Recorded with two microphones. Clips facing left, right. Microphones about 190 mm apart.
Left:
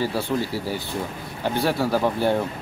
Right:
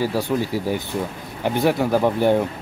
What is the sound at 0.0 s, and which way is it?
Speech, 15° right (ahead or behind).